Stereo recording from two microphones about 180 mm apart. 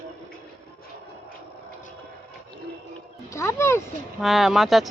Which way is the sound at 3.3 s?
15° left (ahead or behind).